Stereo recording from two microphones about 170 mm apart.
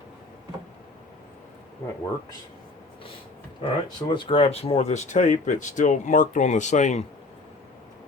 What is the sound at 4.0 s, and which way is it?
Speech, 25° left (ahead or behind).